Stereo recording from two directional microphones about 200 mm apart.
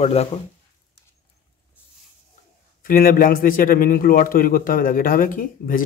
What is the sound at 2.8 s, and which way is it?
A man's voice, 45° left (ahead or behind).